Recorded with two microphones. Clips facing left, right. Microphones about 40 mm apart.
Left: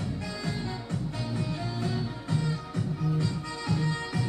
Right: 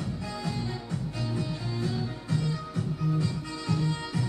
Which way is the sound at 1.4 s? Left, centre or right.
Left.